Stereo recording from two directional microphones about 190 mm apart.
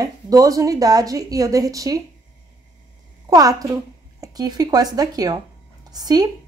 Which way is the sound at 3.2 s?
20° right (ahead or behind).